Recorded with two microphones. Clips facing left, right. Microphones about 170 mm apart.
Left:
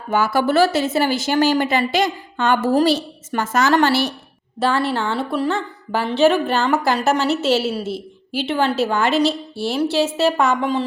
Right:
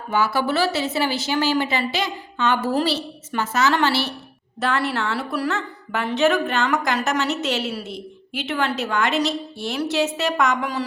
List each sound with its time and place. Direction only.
0.1 s a woman's voice: 50° left (ahead or behind)
4.6 s a woman's voice: 30° left (ahead or behind)